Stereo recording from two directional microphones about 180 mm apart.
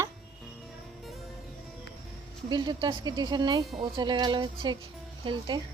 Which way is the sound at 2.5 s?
25° right (ahead or behind).